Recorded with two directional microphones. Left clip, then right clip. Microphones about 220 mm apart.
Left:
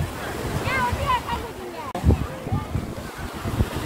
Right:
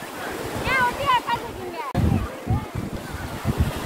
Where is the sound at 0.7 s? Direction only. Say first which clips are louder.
Right 3 dB; 50° right (ahead or behind).